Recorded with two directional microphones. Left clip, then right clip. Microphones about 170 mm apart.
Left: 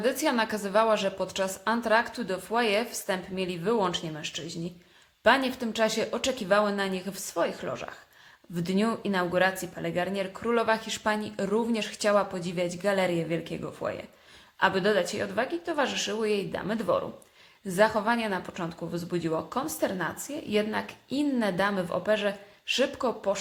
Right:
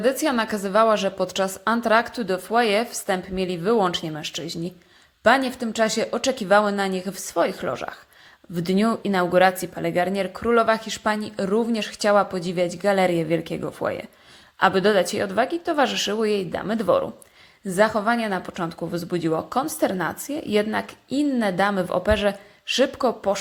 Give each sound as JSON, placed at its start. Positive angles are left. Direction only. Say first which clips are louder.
{"t": 0.0, "sound": "a woman's voice", "louder": "right 5 dB", "side_deg": -25}
{"t": 5.2, "sound": "a woman's voice", "louder": "right 5 dB", "side_deg": -25}